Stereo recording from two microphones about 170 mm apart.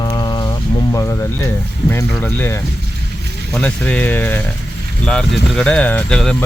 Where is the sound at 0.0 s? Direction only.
25° left (ahead or behind).